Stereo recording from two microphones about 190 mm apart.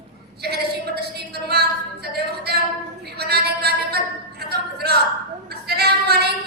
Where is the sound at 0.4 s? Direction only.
60° right (ahead or behind).